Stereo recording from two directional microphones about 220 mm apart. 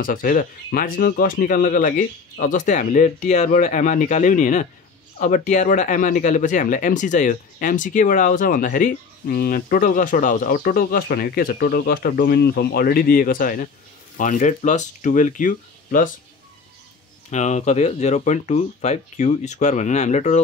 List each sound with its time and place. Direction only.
0.0 s speech: 40° left (ahead or behind)
17.3 s speech: 30° left (ahead or behind)